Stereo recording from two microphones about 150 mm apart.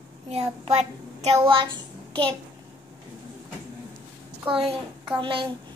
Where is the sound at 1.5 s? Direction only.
35° right (ahead or behind).